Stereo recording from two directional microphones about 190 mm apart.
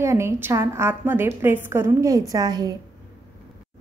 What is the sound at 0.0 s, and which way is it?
A woman's voice, 15° right (ahead or behind).